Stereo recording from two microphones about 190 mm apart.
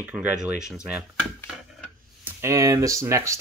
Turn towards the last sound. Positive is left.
turn(degrees=-15)  # may be behind; listen again after turning